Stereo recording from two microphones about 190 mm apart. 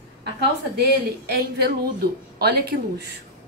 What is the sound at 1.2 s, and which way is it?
A woman's voice, 55° right (ahead or behind).